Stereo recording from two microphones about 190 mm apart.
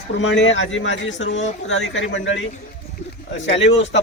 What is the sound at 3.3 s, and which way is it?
Speech, 70° left (ahead or behind).